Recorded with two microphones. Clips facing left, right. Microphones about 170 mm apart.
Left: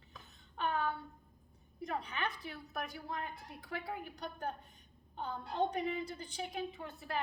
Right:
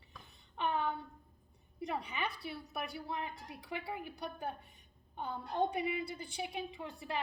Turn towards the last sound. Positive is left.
turn(degrees=-15)  # may be behind; listen again after turning